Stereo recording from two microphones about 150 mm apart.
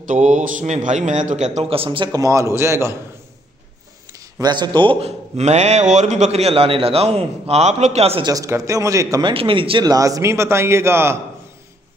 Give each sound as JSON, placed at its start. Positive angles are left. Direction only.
{"t": 0.0, "sound": "a man's voice", "side_deg": -55}
{"t": 4.1, "sound": "a man's voice", "side_deg": -25}
{"t": 5.4, "sound": "a man's voice", "side_deg": -50}
{"t": 8.3, "sound": "a man's voice", "side_deg": -20}
{"t": 9.3, "sound": "a man's voice", "side_deg": -35}